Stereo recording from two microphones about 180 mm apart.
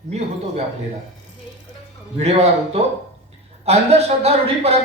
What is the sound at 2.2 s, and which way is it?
A man's voice, 35° right (ahead or behind).